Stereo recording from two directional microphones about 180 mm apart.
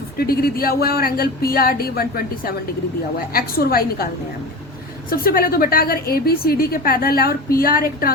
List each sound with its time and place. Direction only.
0.2 s speech: 55° left (ahead or behind)
5.1 s speech: 55° left (ahead or behind)